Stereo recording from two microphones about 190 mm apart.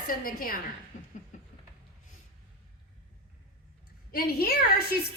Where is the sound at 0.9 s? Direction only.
40° left (ahead or behind).